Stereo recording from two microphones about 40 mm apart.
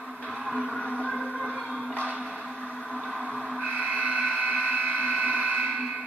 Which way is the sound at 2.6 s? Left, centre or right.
Left.